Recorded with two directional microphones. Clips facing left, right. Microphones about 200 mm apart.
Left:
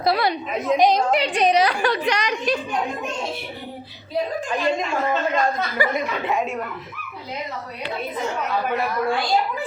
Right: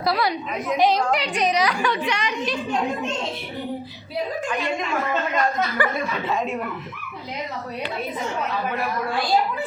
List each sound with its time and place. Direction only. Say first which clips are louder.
0.0 s a woman's voice: left 2 dB; 25° left (ahead or behind)
5.7 s speech: left 1 dB; 15° left (ahead or behind)